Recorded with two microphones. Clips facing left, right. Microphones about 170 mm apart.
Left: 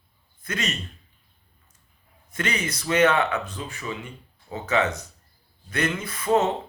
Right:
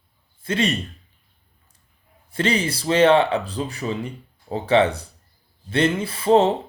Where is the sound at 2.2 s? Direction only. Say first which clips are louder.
Right 6 dB; 30° right (ahead or behind).